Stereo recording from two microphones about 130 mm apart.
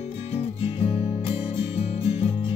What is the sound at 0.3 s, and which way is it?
Music, 50° left (ahead or behind).